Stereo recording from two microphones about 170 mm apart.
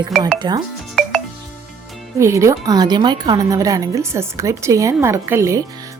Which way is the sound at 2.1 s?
15° right (ahead or behind).